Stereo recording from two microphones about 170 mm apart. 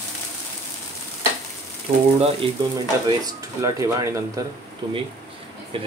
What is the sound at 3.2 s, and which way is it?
Speech, 20° right (ahead or behind).